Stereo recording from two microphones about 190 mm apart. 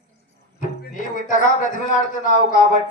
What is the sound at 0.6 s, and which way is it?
A man's voice, 45° left (ahead or behind).